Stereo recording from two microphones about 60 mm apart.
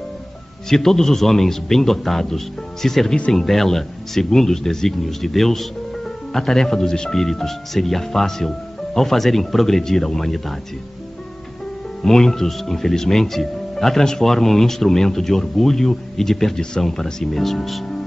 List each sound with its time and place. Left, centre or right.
0.7 s speech: centre
12.0 s speech: centre